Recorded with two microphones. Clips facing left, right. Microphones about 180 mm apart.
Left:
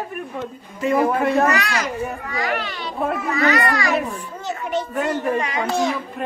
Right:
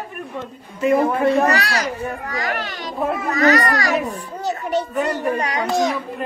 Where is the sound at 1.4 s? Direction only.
35° right (ahead or behind).